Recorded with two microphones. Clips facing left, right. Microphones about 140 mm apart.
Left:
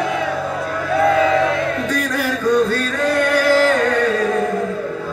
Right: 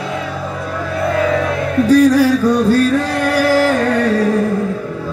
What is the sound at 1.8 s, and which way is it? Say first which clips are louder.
Music: right 11 dB; 35° right (ahead or behind).